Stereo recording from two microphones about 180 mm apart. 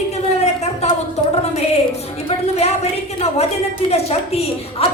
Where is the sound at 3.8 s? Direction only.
35° left (ahead or behind).